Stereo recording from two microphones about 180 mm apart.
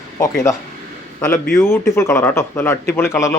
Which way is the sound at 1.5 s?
15° left (ahead or behind).